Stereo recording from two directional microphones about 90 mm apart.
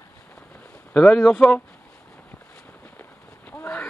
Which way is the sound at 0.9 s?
10° left (ahead or behind).